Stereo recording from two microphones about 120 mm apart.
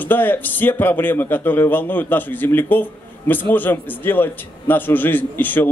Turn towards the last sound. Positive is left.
turn(degrees=15)  # may be behind; listen again after turning